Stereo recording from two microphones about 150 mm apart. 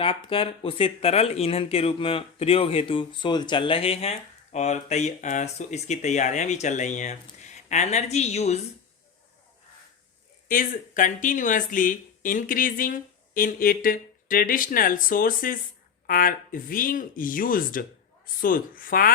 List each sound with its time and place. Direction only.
0.0 s speech: 35° left (ahead or behind)
10.5 s speech: 65° left (ahead or behind)